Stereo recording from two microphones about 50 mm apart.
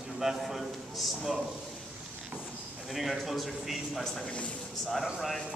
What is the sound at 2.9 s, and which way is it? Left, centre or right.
A man's voice, centre.